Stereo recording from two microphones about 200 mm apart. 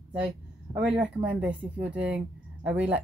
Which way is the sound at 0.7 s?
5° right (ahead or behind).